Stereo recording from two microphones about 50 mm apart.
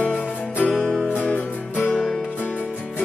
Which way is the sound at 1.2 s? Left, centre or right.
Left.